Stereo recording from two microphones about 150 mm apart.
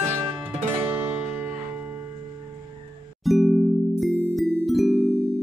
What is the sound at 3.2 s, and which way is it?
Music, centre (ahead or behind).